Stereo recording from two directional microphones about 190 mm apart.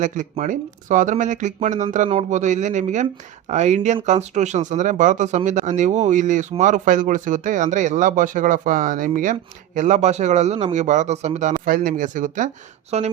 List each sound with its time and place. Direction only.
0.0 s speech: 40° right (ahead or behind)